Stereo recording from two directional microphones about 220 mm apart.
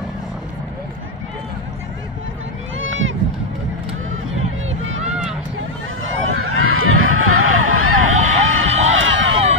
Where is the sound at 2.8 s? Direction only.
60° right (ahead or behind).